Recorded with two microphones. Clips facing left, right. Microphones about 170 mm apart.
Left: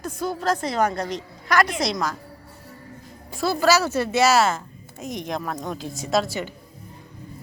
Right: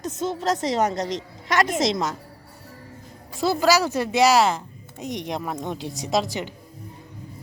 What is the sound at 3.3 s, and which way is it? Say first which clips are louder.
Speech: even; 15° right (ahead or behind).